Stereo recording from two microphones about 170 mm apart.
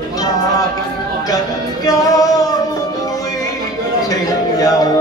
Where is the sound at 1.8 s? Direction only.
20° left (ahead or behind).